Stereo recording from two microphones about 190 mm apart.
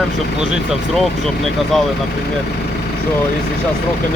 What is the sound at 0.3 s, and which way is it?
Speech, 5° right (ahead or behind).